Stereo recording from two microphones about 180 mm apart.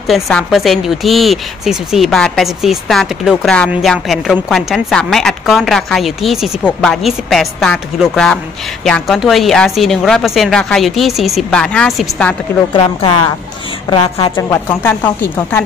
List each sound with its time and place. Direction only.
0.0 s speech: 5° left (ahead or behind)
12.7 s a woman's voice: 30° left (ahead or behind)
14.3 s speech: 10° left (ahead or behind)